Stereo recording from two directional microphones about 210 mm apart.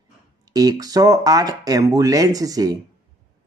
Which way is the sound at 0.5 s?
20° right (ahead or behind).